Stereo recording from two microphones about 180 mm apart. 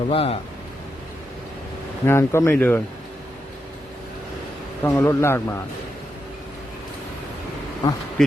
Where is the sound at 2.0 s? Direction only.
15° left (ahead or behind).